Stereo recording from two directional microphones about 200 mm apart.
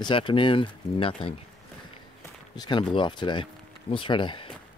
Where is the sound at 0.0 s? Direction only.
25° left (ahead or behind).